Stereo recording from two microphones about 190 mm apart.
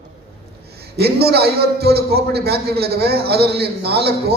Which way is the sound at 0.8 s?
55° right (ahead or behind).